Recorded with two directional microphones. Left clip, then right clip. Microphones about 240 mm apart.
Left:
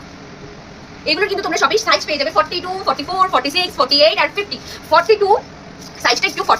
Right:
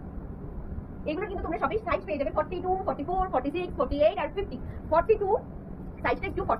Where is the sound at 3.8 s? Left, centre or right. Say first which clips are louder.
Left 12 dB; centre.